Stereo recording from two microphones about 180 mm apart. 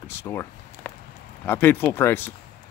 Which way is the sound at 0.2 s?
10° left (ahead or behind).